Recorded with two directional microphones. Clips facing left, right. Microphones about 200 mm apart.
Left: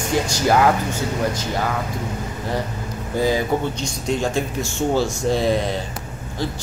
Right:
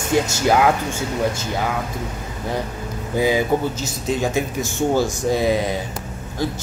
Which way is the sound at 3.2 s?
10° right (ahead or behind).